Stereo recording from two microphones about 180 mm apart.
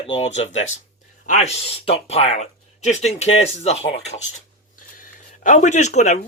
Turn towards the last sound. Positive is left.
turn(degrees=40)  # may be behind; listen again after turning